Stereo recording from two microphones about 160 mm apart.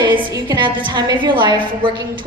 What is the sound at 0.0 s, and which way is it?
A woman's voice, 30° right (ahead or behind).